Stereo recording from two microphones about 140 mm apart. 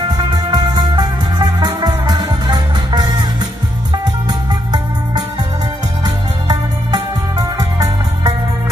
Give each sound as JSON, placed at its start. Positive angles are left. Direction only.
{"t": 0.5, "sound": "music", "side_deg": -30}